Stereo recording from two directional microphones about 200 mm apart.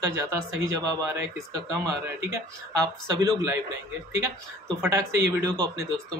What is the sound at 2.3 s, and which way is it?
Speech, 15° right (ahead or behind).